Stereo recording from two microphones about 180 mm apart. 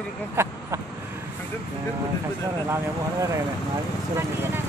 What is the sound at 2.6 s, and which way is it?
A man's voice, 15° right (ahead or behind).